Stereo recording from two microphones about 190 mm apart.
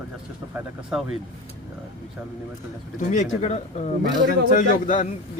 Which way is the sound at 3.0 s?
40° left (ahead or behind).